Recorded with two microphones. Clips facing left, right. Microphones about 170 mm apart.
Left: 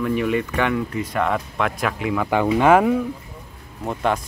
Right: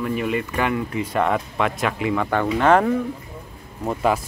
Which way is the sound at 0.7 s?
5° right (ahead or behind).